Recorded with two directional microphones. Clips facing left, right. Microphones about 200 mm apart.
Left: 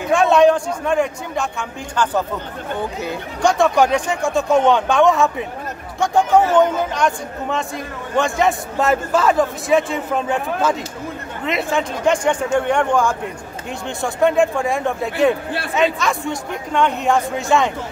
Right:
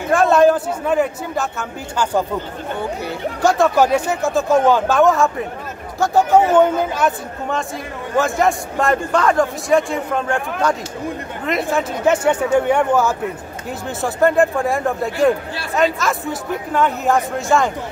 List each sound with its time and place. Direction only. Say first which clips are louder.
0.1 s a man's voice: even; centre (ahead or behind)
3.4 s a man's voice: even; centre (ahead or behind)